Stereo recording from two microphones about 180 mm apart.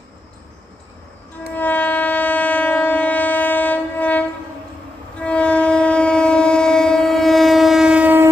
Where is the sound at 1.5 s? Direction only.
10° left (ahead or behind).